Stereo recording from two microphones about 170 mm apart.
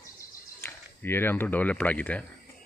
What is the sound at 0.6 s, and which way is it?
Speech, 15° left (ahead or behind).